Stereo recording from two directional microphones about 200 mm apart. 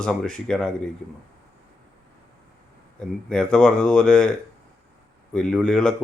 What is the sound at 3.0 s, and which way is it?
Speech, 5° left (ahead or behind).